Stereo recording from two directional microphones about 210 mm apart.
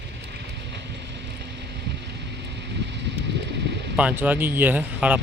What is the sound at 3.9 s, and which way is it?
Speech, 10° right (ahead or behind).